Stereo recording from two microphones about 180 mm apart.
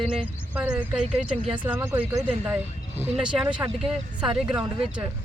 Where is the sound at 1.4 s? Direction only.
35° right (ahead or behind).